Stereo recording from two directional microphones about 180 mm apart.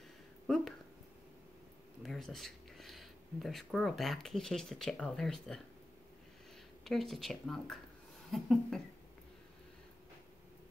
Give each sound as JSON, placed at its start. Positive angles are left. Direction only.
{"t": 2.0, "sound": "speech", "side_deg": 0}
{"t": 6.8, "sound": "speech", "side_deg": 0}